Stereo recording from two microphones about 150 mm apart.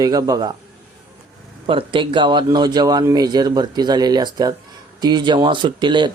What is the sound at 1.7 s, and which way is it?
Speech, 35° right (ahead or behind).